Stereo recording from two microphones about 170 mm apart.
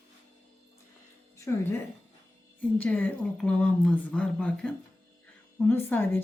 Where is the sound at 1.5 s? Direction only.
15° left (ahead or behind).